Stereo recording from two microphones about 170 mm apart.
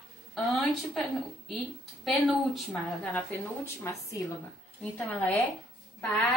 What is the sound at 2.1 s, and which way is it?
A woman's voice, centre (ahead or behind).